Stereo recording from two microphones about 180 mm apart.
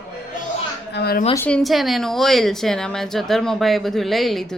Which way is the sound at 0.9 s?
65° left (ahead or behind).